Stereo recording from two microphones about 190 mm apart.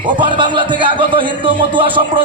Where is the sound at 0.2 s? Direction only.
25° right (ahead or behind).